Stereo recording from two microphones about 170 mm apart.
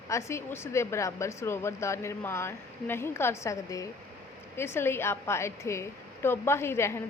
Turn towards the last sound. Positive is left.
turn(degrees=15)  # may be behind; listen again after turning